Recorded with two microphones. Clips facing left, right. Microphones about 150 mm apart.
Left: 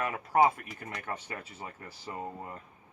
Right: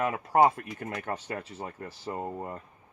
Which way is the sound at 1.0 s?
35° right (ahead or behind).